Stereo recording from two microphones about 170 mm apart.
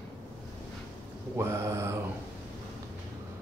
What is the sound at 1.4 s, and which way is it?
Mantra, 15° right (ahead or behind).